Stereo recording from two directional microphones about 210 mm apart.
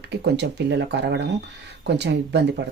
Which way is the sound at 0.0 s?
55° right (ahead or behind).